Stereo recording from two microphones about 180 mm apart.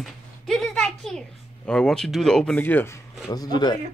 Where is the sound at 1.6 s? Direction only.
5° left (ahead or behind); by 3.8 s 25° left (ahead or behind).